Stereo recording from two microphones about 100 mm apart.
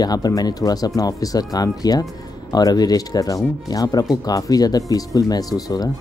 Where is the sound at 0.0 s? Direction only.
40° left (ahead or behind).